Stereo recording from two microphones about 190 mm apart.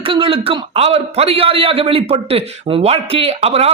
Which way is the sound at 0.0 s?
30° right (ahead or behind).